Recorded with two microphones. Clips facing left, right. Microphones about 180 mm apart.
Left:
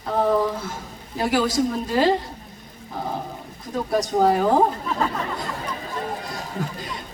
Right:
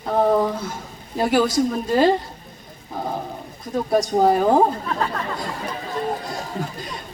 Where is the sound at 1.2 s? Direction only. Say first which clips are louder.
Right 3 dB; 25° right (ahead or behind).